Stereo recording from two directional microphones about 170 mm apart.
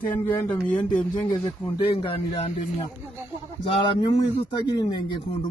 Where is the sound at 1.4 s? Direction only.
35° left (ahead or behind).